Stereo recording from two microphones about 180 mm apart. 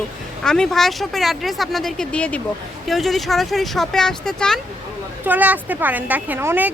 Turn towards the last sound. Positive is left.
turn(degrees=-10)  # may be behind; listen again after turning